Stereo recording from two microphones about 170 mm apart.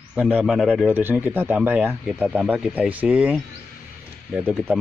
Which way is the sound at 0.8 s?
10° right (ahead or behind).